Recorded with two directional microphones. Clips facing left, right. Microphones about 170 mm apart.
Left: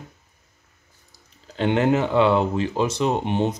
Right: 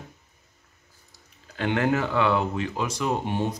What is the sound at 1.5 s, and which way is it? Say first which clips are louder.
Speech: left 4 dB; 20° left (ahead or behind).